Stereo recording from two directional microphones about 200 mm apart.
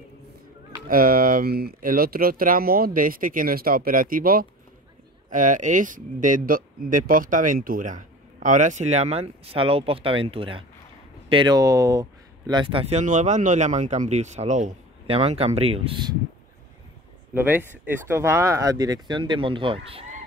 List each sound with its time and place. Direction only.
0.8 s speech: 45° right (ahead or behind); by 13.0 s 25° right (ahead or behind)
13.0 s speech: 35° right (ahead or behind)
17.3 s speech: 10° right (ahead or behind); by 20.1 s 25° right (ahead or behind)